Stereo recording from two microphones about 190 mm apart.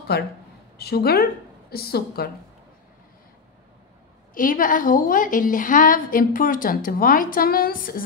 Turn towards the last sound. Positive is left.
turn(degrees=50)  # may be behind; listen again after turning